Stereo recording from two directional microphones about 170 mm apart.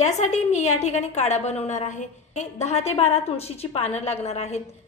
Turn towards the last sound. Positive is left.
turn(degrees=40)  # may be behind; listen again after turning